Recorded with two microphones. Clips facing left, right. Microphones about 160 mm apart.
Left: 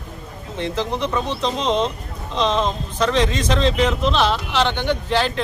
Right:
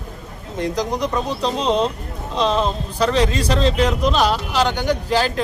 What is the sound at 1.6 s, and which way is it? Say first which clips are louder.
A man's voice: right 2 dB; 5° right (ahead or behind).